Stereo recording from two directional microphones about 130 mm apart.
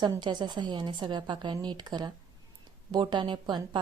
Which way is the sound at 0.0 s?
30° right (ahead or behind).